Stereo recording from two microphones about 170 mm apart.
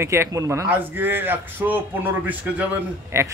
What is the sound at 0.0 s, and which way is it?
A man's voice, 15° right (ahead or behind).